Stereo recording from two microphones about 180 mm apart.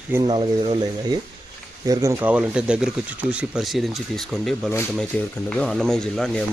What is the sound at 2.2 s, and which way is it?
Speech, 5° right (ahead or behind).